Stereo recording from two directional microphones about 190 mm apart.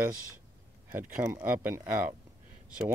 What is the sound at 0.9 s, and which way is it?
Speech, 10° right (ahead or behind).